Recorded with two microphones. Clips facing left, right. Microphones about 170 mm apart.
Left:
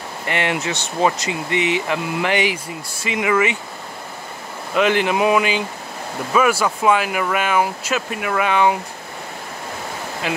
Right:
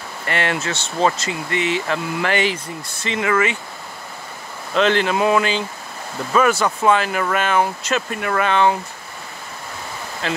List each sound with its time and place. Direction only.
0.3 s speech: 15° left (ahead or behind)
4.7 s speech: 10° left (ahead or behind)
10.2 s speech: 10° left (ahead or behind)